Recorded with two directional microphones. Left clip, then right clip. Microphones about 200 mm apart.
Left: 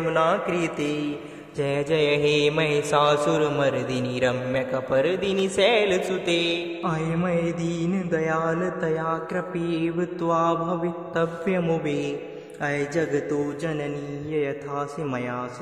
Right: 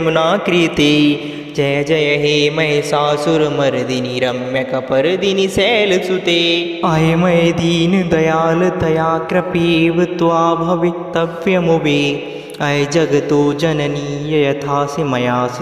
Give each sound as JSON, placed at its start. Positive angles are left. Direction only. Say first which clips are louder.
{"t": 0.0, "sound": "mantra", "louder": "right 8 dB", "side_deg": -35}
{"t": 1.6, "sound": "mantra", "louder": "right 8 dB", "side_deg": -25}